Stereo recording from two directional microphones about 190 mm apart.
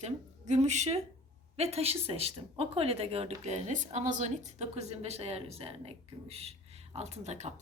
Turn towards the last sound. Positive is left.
turn(degrees=-35)  # may be behind; listen again after turning